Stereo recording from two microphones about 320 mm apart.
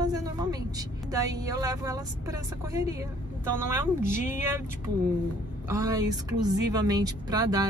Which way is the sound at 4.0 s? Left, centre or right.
Left.